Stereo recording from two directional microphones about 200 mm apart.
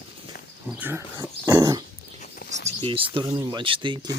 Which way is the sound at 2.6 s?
25° right (ahead or behind).